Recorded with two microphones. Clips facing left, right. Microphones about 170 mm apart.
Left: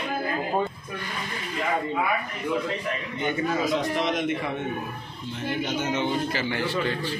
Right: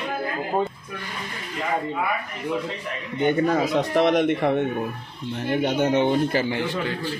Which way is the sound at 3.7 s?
60° right (ahead or behind).